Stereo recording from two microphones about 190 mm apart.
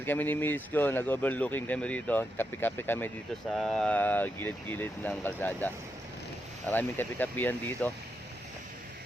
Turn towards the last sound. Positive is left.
turn(degrees=10)  # may be behind; listen again after turning